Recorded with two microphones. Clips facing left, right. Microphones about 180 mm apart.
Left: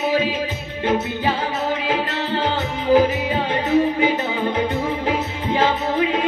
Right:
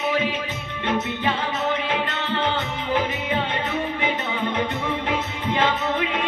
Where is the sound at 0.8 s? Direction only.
35° left (ahead or behind).